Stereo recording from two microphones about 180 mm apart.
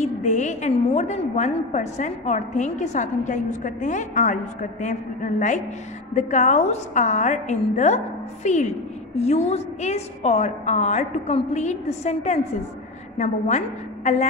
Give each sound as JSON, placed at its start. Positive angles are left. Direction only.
{"t": 0.0, "sound": "a woman's voice", "side_deg": 40}